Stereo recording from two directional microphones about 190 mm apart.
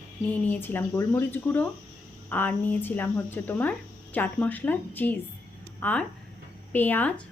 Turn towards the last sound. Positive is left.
turn(degrees=10)  # may be behind; listen again after turning